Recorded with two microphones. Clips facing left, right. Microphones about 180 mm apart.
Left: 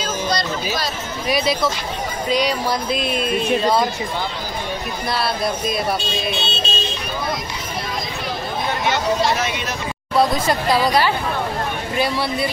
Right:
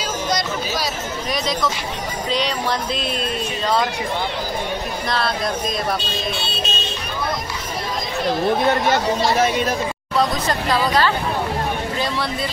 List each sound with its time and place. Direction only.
0.0 s music: 10° right (ahead or behind)
1.3 s speech: 5° left (ahead or behind)
5.1 s speech: 5° left (ahead or behind)
6.4 s vehicle: 25° left (ahead or behind)
9.4 s speech: 45° right (ahead or behind)
10.1 s speech: 10° left (ahead or behind)